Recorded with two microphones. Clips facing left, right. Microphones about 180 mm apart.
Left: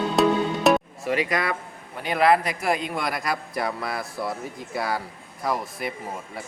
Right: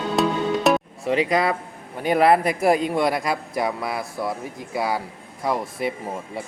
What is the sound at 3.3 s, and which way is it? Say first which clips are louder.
A man's voice: right 3 dB; 15° right (ahead or behind).